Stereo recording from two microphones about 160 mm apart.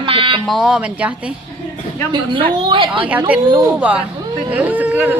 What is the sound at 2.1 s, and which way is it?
Speech, 30° right (ahead or behind).